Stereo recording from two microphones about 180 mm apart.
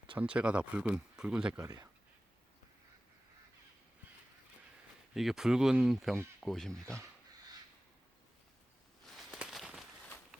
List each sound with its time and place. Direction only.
0.2 s speech: 5° right (ahead or behind)
1.6 s speech: 20° right (ahead or behind)
5.1 s speech: centre (ahead or behind)
9.1 s a sound: centre (ahead or behind)